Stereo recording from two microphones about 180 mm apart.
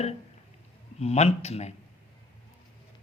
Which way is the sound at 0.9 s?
35° left (ahead or behind).